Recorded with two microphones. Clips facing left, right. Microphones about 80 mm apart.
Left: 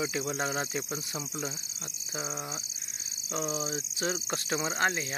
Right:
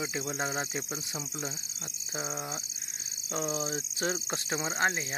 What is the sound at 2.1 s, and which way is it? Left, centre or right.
Speech, right.